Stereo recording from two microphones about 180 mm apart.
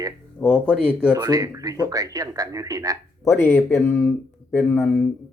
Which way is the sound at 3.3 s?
10° left (ahead or behind).